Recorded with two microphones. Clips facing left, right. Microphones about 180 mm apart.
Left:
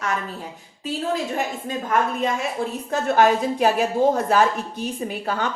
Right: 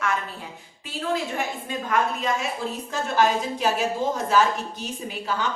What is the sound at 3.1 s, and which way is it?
Speech, 60° left (ahead or behind).